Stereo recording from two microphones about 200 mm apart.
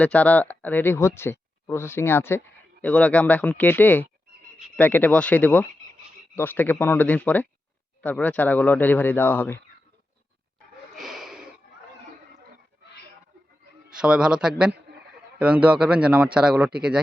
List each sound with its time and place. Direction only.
0.0 s speech: 5° left (ahead or behind)
10.9 s snort: centre (ahead or behind)
14.0 s a man's voice: 5° right (ahead or behind)